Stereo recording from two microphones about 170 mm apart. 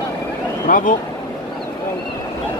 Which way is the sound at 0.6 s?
55° left (ahead or behind).